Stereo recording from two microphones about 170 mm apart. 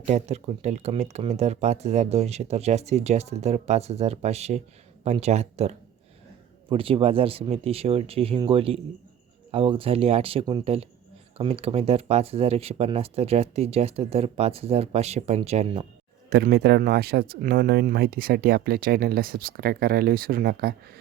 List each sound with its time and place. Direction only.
0.1 s speech: 40° right (ahead or behind)
16.3 s speech: 65° right (ahead or behind)